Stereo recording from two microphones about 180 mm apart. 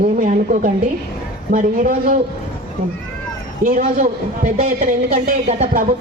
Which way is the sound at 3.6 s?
45° right (ahead or behind).